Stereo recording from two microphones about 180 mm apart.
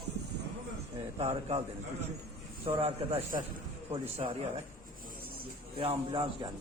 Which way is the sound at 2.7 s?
30° right (ahead or behind).